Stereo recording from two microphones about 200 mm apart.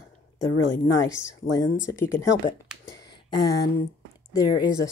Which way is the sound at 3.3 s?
20° left (ahead or behind).